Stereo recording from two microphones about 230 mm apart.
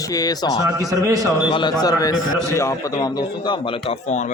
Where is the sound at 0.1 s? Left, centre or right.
Centre.